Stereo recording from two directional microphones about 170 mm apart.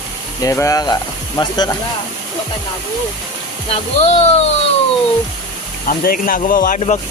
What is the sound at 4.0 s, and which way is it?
Speech, 40° left (ahead or behind).